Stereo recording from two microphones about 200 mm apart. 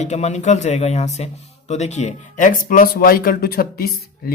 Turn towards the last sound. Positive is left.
turn(degrees=50)  # may be behind; listen again after turning